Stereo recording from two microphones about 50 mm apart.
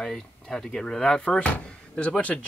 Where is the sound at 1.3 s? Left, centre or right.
Left.